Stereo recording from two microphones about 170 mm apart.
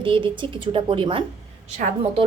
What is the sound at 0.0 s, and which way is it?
A woman's voice, 30° right (ahead or behind).